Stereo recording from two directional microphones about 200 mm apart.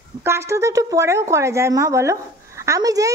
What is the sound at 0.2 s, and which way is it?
A woman's voice, 15° right (ahead or behind).